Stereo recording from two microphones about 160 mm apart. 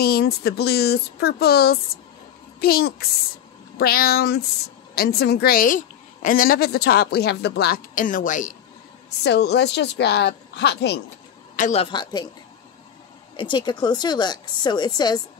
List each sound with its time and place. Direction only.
0.0 s a woman's voice: 75° left (ahead or behind); by 8.5 s 55° left (ahead or behind)
9.2 s a woman's voice: 90° left
11.5 s a sound: 50° left (ahead or behind)
11.8 s speech: 25° left (ahead or behind)
13.4 s speech: 30° left (ahead or behind)